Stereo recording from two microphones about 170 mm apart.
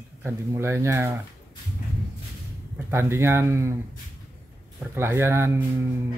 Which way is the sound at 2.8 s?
15° right (ahead or behind).